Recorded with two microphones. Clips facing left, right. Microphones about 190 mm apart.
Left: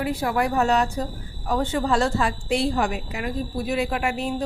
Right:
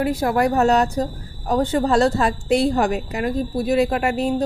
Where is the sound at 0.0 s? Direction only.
40° right (ahead or behind).